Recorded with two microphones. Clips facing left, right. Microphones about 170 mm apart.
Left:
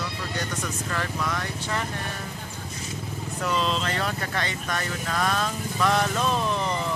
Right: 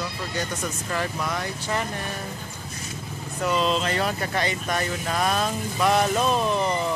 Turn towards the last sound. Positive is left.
turn(degrees=-15)  # may be behind; listen again after turning